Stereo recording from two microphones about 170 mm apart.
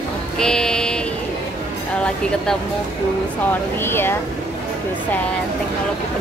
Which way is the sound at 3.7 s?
15° left (ahead or behind).